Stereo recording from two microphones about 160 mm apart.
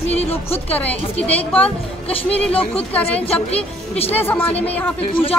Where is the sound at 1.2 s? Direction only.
10° left (ahead or behind).